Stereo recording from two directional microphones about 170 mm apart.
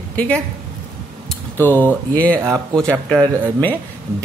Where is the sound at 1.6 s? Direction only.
10° left (ahead or behind).